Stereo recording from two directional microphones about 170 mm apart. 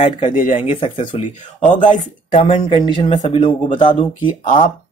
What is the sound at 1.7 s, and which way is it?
Speech, 50° left (ahead or behind).